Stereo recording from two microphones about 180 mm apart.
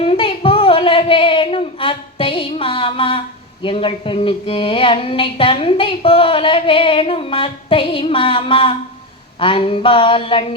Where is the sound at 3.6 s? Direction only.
30° left (ahead or behind).